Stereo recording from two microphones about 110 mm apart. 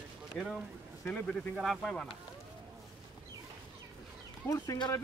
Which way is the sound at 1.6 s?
Centre (ahead or behind).